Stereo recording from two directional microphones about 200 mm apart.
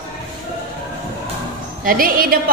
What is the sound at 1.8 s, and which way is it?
Speech, 45° right (ahead or behind).